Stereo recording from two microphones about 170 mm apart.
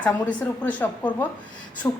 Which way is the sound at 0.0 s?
10° left (ahead or behind).